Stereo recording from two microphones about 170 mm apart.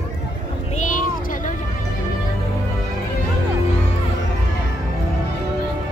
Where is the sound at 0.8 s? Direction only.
50° left (ahead or behind).